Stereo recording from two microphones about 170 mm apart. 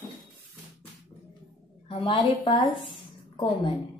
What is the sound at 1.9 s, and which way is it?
Speech, 30° left (ahead or behind).